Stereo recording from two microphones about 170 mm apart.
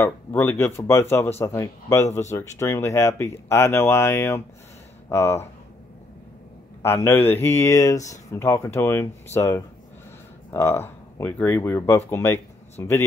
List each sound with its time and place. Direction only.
0.0 s speech: 10° left (ahead or behind)
6.8 s speech: 15° left (ahead or behind)